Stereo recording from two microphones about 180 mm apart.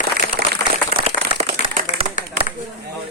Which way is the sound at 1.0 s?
35° right (ahead or behind).